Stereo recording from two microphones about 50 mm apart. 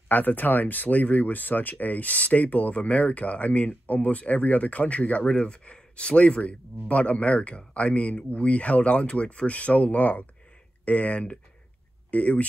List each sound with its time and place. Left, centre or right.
0.1 s speech: left